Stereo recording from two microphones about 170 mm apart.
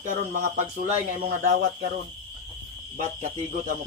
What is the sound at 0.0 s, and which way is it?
Speech, 50° right (ahead or behind).